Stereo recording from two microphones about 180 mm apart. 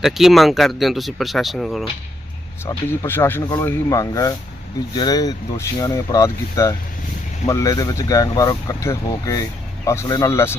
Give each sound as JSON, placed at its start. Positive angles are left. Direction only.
{"t": 0.0, "sound": "speech", "side_deg": 0}
{"t": 2.6, "sound": "speech", "side_deg": 15}